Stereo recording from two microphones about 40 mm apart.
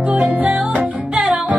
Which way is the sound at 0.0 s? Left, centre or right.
Right.